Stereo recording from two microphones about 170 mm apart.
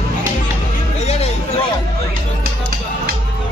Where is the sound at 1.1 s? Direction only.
35° left (ahead or behind).